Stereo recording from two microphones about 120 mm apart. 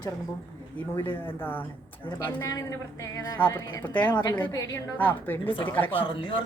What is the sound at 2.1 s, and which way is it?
Speech, 30° left (ahead or behind).